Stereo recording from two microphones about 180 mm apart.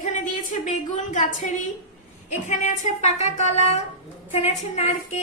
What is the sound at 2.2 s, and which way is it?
A woman's voice, 40° left (ahead or behind).